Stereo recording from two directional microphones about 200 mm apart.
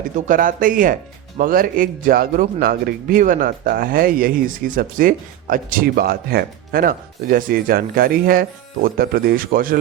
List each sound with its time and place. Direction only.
0.3 s speech: 40° right (ahead or behind)